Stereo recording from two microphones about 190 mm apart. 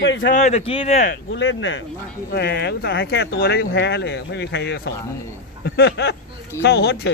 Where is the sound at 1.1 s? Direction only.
80° left.